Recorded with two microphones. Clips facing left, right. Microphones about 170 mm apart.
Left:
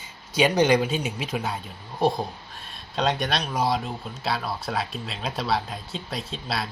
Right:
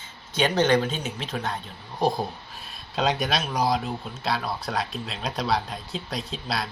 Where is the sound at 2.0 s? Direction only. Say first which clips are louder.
Left 1 dB; centre (ahead or behind).